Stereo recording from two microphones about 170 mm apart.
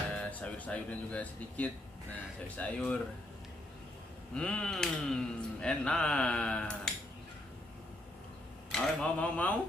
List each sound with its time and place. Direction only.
0.1 s speech: 5° left (ahead or behind)
4.3 s speech: 5° left (ahead or behind)
8.7 s speech: 5° left (ahead or behind)